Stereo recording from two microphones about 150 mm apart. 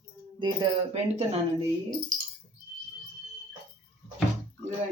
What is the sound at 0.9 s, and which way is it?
Speech, 45° right (ahead or behind).